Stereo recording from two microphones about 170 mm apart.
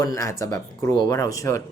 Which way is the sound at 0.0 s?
20° left (ahead or behind).